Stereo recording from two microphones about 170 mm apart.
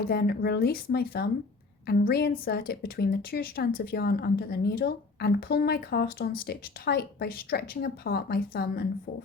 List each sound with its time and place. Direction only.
0.1 s a woman's voice: 65° left (ahead or behind)